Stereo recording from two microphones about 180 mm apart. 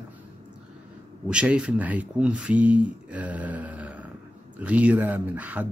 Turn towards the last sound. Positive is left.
turn(degrees=-10)  # may be behind; listen again after turning